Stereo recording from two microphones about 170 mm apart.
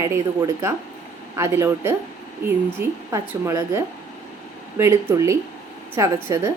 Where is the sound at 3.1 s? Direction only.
15° right (ahead or behind).